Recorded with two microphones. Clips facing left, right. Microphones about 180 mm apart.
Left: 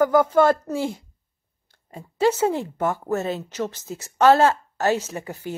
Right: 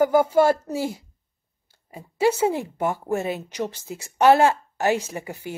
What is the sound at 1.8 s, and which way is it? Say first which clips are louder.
Speech: even; 10° right (ahead or behind).